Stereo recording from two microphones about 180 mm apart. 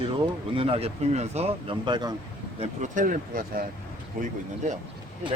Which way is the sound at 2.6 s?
45° right (ahead or behind).